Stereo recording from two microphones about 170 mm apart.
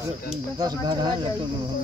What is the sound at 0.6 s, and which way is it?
Speech, 25° right (ahead or behind).